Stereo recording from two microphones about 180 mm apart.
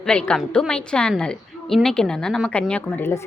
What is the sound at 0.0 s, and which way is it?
A woman's voice, 5° left (ahead or behind).